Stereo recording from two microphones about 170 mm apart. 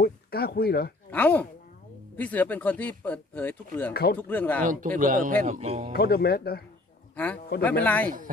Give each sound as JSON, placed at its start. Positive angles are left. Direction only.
{"t": 0.0, "sound": "speech", "side_deg": 65}
{"t": 1.1, "sound": "speech", "side_deg": 10}
{"t": 3.9, "sound": "speech", "side_deg": 70}
{"t": 4.2, "sound": "speech", "side_deg": 10}
{"t": 4.6, "sound": "speech", "side_deg": -50}
{"t": 5.9, "sound": "speech", "side_deg": 65}
{"t": 7.6, "sound": "speech", "side_deg": 10}